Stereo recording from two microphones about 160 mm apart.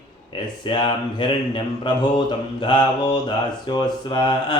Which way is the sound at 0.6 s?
30° left (ahead or behind).